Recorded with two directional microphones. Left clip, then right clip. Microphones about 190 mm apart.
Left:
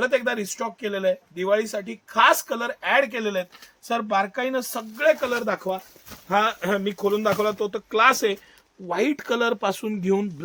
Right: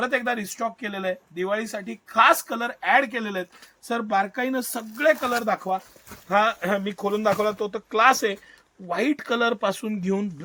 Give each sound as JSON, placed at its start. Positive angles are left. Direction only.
{"t": 0.0, "sound": "speech", "side_deg": 40}